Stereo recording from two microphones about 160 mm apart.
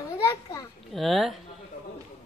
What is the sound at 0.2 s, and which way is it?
Speech, 20° left (ahead or behind).